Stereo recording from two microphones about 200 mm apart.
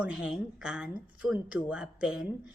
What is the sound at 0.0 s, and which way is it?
A woman's voice, 5° right (ahead or behind).